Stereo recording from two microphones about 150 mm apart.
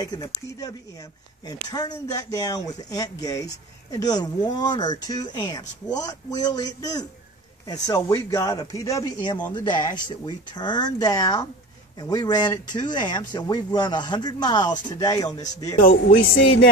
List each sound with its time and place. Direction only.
0.0 s speech: 25° left (ahead or behind)